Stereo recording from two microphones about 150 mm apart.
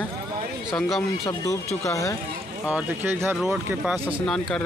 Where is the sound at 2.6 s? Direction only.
10° right (ahead or behind).